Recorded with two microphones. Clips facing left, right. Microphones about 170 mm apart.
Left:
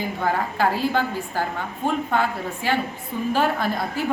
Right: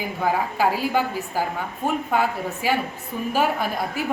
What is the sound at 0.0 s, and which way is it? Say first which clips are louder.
A woman's voice: even; 10° right (ahead or behind).